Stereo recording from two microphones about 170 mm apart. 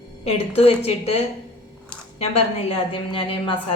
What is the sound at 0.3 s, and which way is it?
Speech, 35° left (ahead or behind).